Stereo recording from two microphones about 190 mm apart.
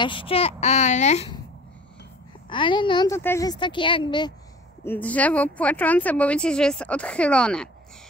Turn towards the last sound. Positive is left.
turn(degrees=5)  # may be behind; listen again after turning